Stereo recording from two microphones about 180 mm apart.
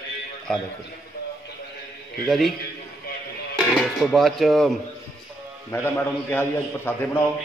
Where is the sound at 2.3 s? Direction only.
Centre (ahead or behind).